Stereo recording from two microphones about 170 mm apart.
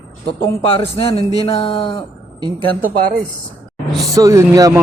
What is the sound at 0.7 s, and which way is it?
Speech, 35° left (ahead or behind).